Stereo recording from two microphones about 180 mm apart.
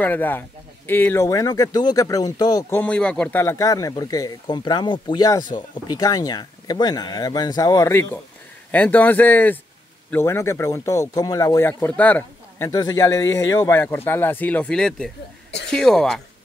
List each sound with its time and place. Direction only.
0.0 s speech: 10° left (ahead or behind)
2.8 s speech: 5° left (ahead or behind)